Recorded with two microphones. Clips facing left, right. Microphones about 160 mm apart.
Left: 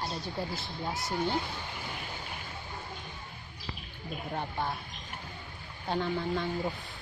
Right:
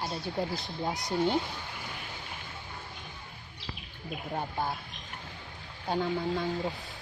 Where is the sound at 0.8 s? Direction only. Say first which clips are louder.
Right 3 dB; 20° right (ahead or behind).